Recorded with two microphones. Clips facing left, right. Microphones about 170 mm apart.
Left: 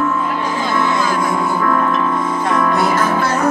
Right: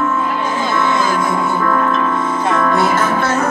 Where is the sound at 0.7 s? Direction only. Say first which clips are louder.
Right 1 dB; 25° right (ahead or behind).